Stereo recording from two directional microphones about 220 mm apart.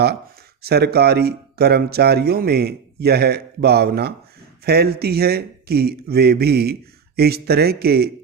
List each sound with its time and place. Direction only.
0.6 s speech: 45° right (ahead or behind)